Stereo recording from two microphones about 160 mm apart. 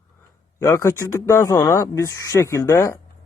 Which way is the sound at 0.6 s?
15° left (ahead or behind).